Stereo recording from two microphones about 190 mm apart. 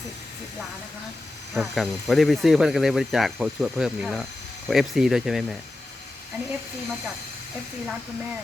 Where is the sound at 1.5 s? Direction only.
Centre (ahead or behind).